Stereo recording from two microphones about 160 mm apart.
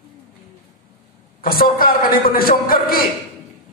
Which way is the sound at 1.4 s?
65° left (ahead or behind).